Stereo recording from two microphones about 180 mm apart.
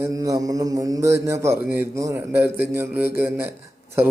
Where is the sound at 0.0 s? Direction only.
20° right (ahead or behind).